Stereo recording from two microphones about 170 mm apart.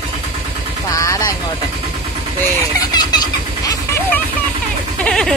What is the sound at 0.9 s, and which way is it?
Vehicle, 20° left (ahead or behind).